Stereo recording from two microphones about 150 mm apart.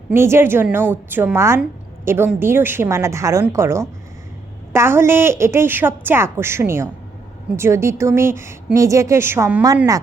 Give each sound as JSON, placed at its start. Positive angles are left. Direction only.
{"t": 0.1, "sound": "a woman's voice", "side_deg": -15}